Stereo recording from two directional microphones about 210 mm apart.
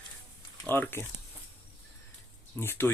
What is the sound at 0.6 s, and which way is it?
Speech, 10° left (ahead or behind).